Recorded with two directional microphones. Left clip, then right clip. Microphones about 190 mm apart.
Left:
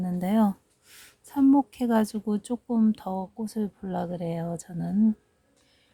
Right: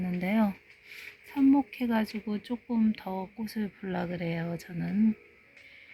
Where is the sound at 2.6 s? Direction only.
30° left (ahead or behind).